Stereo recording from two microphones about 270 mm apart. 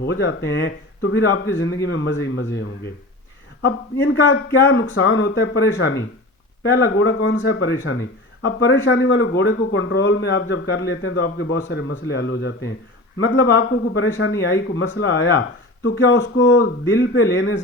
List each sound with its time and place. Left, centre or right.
0.0 s speech: left
3.6 s speech: left